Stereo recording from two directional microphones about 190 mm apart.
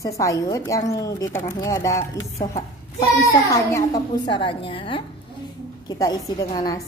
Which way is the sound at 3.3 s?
15° left (ahead or behind).